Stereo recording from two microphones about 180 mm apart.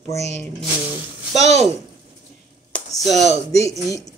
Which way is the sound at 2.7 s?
5° left (ahead or behind).